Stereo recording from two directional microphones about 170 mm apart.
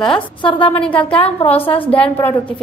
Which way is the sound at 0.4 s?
30° left (ahead or behind).